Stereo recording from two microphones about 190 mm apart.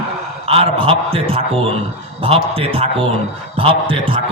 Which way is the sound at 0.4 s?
30° right (ahead or behind).